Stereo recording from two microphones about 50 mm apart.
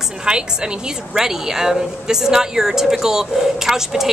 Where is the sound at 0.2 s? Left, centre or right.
Centre.